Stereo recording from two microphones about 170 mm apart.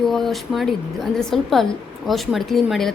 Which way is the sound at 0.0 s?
Centre (ahead or behind).